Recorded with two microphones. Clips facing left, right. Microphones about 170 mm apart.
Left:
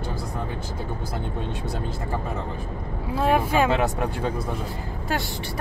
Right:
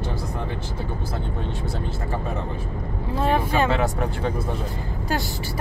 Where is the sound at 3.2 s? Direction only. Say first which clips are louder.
Left 1 dB; 10° left (ahead or behind).